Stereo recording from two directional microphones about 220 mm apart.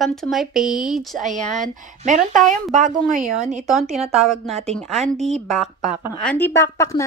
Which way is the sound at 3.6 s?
Centre (ahead or behind).